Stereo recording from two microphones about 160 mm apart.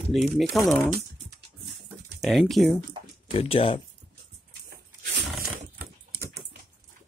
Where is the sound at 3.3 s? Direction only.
35° left (ahead or behind).